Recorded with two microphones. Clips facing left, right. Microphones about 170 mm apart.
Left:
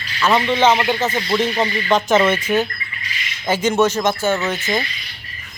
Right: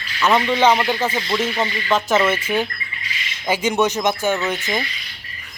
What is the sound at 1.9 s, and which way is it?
Speech, centre (ahead or behind).